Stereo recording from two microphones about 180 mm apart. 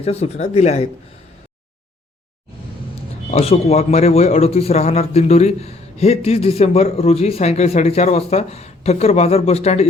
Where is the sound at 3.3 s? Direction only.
35° left (ahead or behind).